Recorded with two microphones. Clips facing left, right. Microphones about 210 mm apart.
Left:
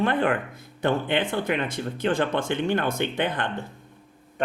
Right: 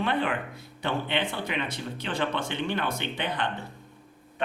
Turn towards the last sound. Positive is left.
turn(degrees=50)  # may be behind; listen again after turning